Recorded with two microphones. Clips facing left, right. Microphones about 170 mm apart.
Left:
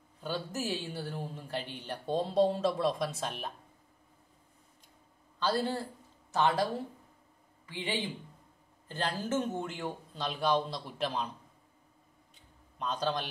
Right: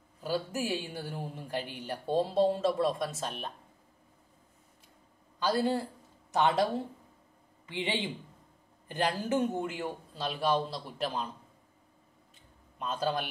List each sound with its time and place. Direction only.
0.2 s speech: 10° right (ahead or behind)
5.4 s speech: 10° right (ahead or behind)
12.7 s a man's voice: 5° right (ahead or behind)